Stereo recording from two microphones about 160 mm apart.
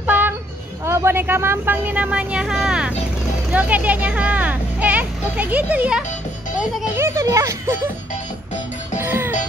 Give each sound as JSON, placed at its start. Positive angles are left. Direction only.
{"t": 0.0, "sound": "child singing", "side_deg": -10}
{"t": 0.8, "sound": "a child's voice", "side_deg": -15}
{"t": 7.0, "sound": "a child's voice", "side_deg": -20}
{"t": 9.0, "sound": "music", "side_deg": -15}